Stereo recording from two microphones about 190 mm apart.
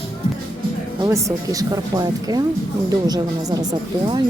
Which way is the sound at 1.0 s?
15° right (ahead or behind).